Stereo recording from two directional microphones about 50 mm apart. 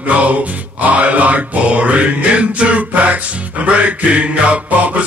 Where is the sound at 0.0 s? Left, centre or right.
Right.